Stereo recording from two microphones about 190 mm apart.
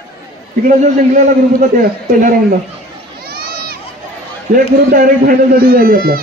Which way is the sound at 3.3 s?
55° right (ahead or behind).